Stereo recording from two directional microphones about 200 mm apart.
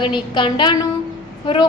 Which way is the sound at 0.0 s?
25° left (ahead or behind).